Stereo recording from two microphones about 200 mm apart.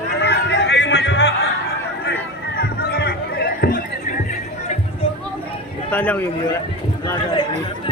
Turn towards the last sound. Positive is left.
turn(degrees=20)  # may be behind; listen again after turning